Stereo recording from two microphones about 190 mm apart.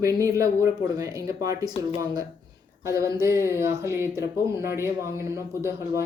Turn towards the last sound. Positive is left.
turn(degrees=-15)  # may be behind; listen again after turning